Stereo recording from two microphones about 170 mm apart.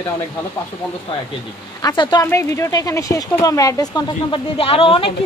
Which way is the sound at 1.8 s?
25° left (ahead or behind).